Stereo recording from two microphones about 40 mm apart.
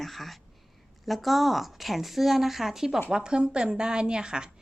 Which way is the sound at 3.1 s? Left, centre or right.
Right.